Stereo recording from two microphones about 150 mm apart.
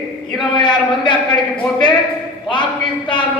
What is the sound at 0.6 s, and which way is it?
Speech, 30° left (ahead or behind).